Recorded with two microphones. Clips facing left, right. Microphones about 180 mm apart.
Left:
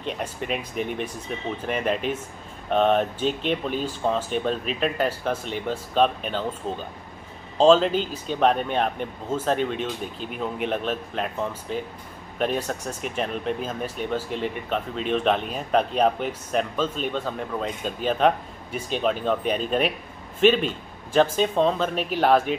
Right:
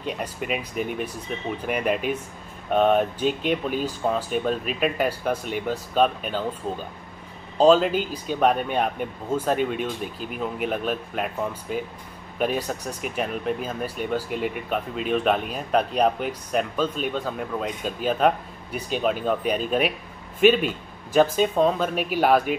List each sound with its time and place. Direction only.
0.0 s speech: 5° right (ahead or behind)